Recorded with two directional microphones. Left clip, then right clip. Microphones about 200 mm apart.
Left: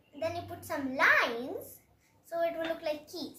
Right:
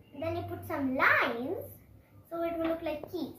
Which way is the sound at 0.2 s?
Centre (ahead or behind).